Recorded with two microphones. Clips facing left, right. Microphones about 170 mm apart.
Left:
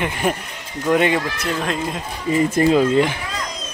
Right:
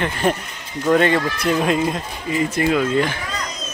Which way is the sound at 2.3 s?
35° left (ahead or behind).